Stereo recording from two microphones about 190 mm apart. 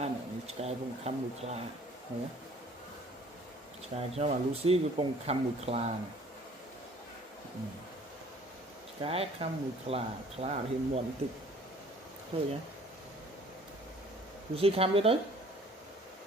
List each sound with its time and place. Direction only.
0.0 s speech: 35° right (ahead or behind)
3.9 s speech: 35° right (ahead or behind)
9.0 s speech: 30° right (ahead or behind)
12.3 s speech: 30° right (ahead or behind)
14.5 s speech: 30° right (ahead or behind)